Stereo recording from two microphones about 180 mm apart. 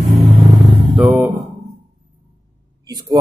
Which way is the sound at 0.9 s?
5° right (ahead or behind).